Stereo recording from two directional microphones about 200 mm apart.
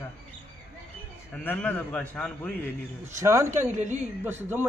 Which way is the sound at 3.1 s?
15° right (ahead or behind).